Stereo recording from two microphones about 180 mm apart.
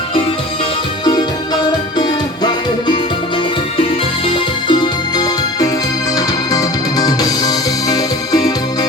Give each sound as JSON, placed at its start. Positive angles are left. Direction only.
{"t": 2.0, "sound": "music", "side_deg": 25}
{"t": 4.7, "sound": "music", "side_deg": 25}